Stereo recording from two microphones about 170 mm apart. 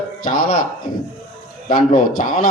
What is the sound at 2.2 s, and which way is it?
Speech, 50° left (ahead or behind).